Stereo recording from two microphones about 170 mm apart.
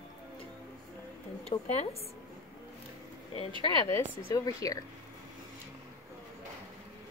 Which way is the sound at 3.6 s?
20° left (ahead or behind).